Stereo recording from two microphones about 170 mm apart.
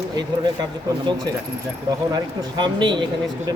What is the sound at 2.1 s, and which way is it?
Speech, 25° right (ahead or behind).